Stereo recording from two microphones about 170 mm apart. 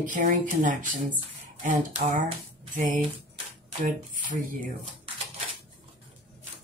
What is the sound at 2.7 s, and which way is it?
Speech, 50° right (ahead or behind).